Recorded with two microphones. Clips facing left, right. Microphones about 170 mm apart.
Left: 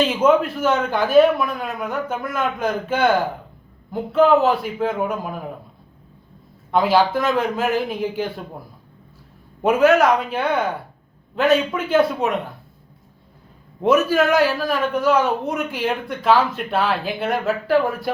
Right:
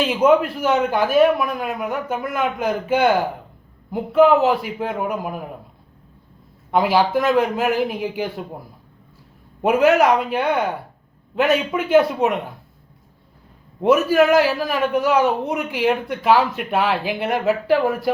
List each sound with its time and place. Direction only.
0.0 s speech: 15° right (ahead or behind)
4.1 s speech: 10° right (ahead or behind)
6.7 s speech: 10° right (ahead or behind)
9.6 s speech: 10° right (ahead or behind)
13.8 s speech: 10° right (ahead or behind)